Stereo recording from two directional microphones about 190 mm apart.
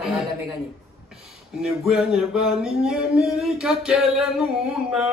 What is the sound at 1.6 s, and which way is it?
Speech, centre (ahead or behind).